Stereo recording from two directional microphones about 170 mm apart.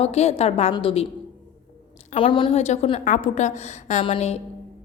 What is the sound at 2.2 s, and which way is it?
Speech, 30° left (ahead or behind).